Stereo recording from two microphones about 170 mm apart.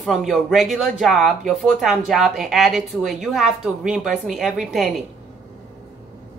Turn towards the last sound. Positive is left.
turn(degrees=0)  # may be behind; listen again after turning